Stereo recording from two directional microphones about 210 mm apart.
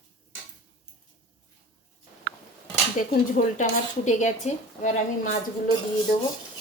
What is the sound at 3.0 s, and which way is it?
A woman's voice, 35° left (ahead or behind).